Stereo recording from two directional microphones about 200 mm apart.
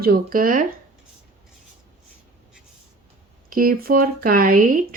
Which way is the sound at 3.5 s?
45° right (ahead or behind).